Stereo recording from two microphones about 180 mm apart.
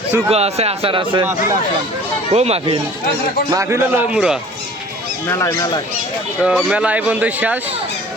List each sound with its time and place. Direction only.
0.3 s speech: 35° right (ahead or behind)
2.3 s speech: 35° right (ahead or behind)
3.5 s speech: 15° right (ahead or behind)
5.3 s speech: 15° left (ahead or behind)
6.4 s speech: 5° right (ahead or behind)